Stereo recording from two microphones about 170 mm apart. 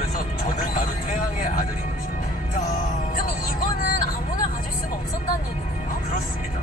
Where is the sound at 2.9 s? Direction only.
55° left (ahead or behind).